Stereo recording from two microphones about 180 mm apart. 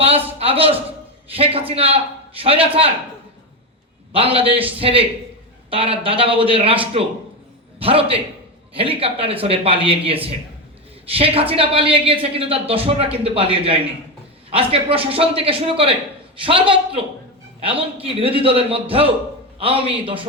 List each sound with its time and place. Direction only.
0.0 s a sound: 35° right (ahead or behind)
0.3 s a woman's voice: 30° right (ahead or behind)
4.1 s a woman's voice: 30° right (ahead or behind)
7.8 s a woman's voice: 30° right (ahead or behind)